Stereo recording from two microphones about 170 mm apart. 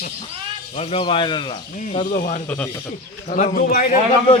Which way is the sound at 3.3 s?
50° left (ahead or behind).